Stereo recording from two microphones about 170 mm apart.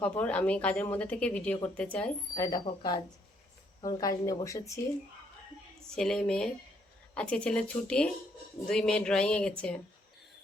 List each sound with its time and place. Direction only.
0.0 s a woman's voice: 10° left (ahead or behind)
2.3 s speech: 20° left (ahead or behind)
5.9 s speech: 5° left (ahead or behind)